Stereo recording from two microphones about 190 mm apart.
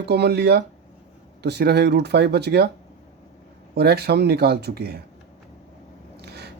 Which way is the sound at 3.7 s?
60° right (ahead or behind).